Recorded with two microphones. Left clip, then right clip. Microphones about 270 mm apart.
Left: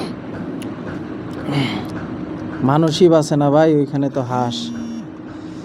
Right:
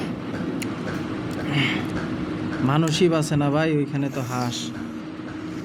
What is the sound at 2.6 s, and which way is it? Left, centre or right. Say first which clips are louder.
Speech: left 8 dB; centre.